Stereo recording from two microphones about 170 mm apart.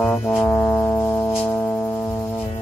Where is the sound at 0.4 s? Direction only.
10° left (ahead or behind).